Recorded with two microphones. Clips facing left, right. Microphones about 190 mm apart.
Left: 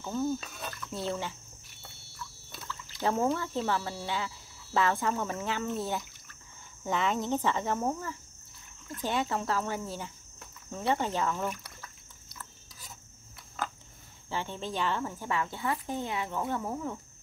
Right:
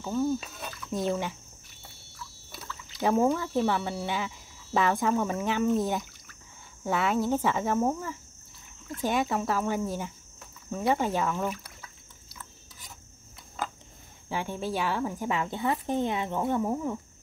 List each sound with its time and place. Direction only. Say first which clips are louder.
0.0 s speech: right 3 dB; centre (ahead or behind)
2.5 s a sound: right 1 dB; 5° right (ahead or behind)
3.0 s speech: right 4 dB; 15° right (ahead or behind)
14.3 s speech: right 4 dB; 10° right (ahead or behind)